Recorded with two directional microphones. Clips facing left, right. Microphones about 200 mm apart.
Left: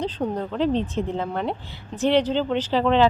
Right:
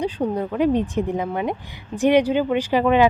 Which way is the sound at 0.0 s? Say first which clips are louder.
Right 3 dB; 10° right (ahead or behind).